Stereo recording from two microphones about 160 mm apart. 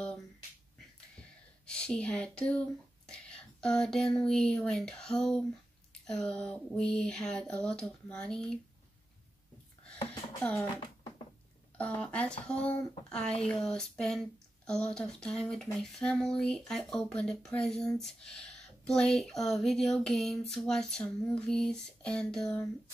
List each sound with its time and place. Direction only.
1.7 s speech: 5° left (ahead or behind)
10.4 s speech: 10° left (ahead or behind)
11.8 s speech: 10° left (ahead or behind)